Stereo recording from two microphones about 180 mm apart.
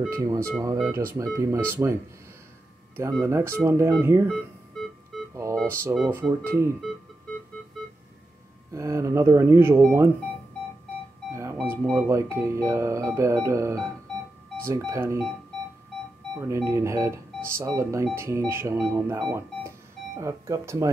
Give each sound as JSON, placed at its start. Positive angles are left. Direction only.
{"t": 0.1, "sound": "speech", "side_deg": -15}
{"t": 3.0, "sound": "speech", "side_deg": -15}
{"t": 5.3, "sound": "music", "side_deg": -15}
{"t": 5.9, "sound": "speech", "side_deg": -5}
{"t": 8.7, "sound": "speech", "side_deg": -15}
{"t": 11.6, "sound": "speech", "side_deg": -15}
{"t": 16.3, "sound": "speech", "side_deg": -15}